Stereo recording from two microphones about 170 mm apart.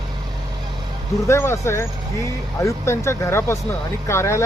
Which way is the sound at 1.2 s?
15° left (ahead or behind).